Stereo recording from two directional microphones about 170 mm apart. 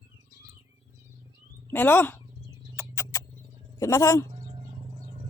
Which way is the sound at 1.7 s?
10° left (ahead or behind).